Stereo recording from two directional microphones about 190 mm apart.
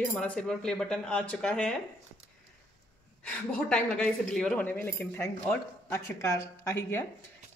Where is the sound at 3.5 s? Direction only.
5° left (ahead or behind).